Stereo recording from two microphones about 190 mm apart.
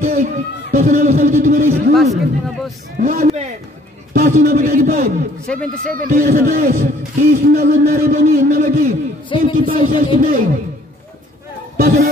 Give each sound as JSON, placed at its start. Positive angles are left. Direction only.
{"t": 0.1, "sound": "speech", "side_deg": -45}
{"t": 2.0, "sound": "speech", "side_deg": 0}
{"t": 3.0, "sound": "a man's voice", "side_deg": -50}
{"t": 3.3, "sound": "a man's voice", "side_deg": -35}
{"t": 5.5, "sound": "speech", "side_deg": 5}
{"t": 5.9, "sound": "a man's voice", "side_deg": -45}
{"t": 9.3, "sound": "a man's voice", "side_deg": 30}
{"t": 9.7, "sound": "a man's voice", "side_deg": -45}
{"t": 11.7, "sound": "a sound", "side_deg": -50}